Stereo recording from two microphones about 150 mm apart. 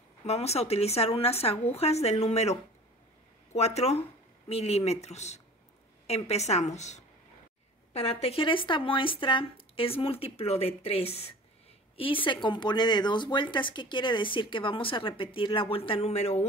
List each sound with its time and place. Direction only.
0.3 s speech: 45° left (ahead or behind)